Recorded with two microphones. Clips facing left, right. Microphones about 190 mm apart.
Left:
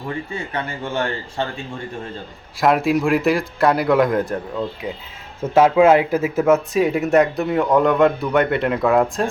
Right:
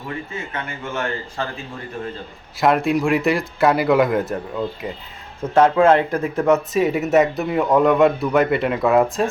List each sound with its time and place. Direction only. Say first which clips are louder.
0.1 s a man's voice: left 2 dB; 35° left (ahead or behind)
2.6 s speech: left 1 dB; centre (ahead or behind)